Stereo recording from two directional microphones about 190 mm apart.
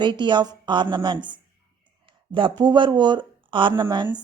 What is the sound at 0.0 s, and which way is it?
Speech, 25° right (ahead or behind).